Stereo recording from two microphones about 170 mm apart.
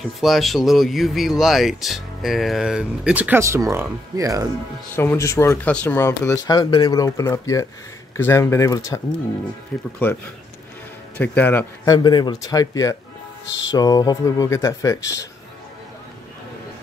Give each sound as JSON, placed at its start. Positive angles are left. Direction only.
{"t": 0.2, "sound": "speech", "side_deg": 0}
{"t": 4.9, "sound": "speech", "side_deg": 15}
{"t": 11.1, "sound": "speech", "side_deg": 10}
{"t": 13.5, "sound": "music", "side_deg": 90}
{"t": 13.7, "sound": "speech", "side_deg": 20}